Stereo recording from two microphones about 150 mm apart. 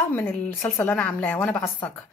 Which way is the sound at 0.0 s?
15° left (ahead or behind).